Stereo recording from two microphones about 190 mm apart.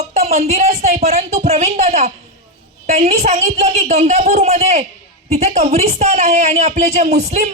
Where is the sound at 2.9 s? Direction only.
35° right (ahead or behind).